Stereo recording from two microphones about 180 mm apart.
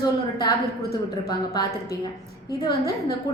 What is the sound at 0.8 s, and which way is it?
Speech, 65° left (ahead or behind).